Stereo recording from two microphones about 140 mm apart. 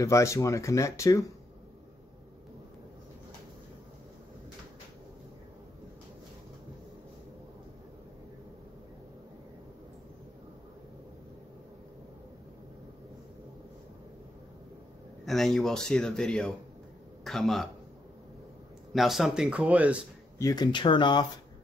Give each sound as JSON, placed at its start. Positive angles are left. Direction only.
{"t": 0.0, "sound": "speech", "side_deg": 20}
{"t": 15.2, "sound": "a man's voice", "side_deg": 0}
{"t": 18.9, "sound": "speech", "side_deg": 0}
{"t": 20.3, "sound": "speech", "side_deg": 25}